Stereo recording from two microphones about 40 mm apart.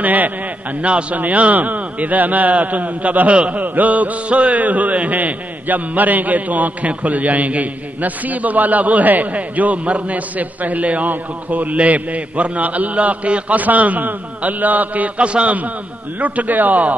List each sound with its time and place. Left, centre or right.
0.0 s a man's voice: right
0.8 s a man's voice: right
3.6 s a man's voice: right
15.1 s a man's voice: right
16.2 s a man's voice: right